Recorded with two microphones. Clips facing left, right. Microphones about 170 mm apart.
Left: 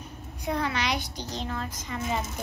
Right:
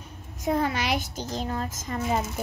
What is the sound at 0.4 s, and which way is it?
Speech, 45° right (ahead or behind).